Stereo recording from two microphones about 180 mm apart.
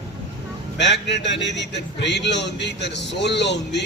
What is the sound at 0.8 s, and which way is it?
A man's voice, 75° left (ahead or behind).